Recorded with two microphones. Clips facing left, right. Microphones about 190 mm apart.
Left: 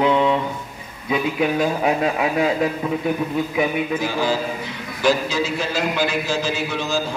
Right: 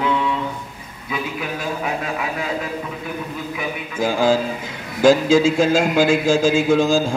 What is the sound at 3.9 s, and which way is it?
Speech, 50° right (ahead or behind).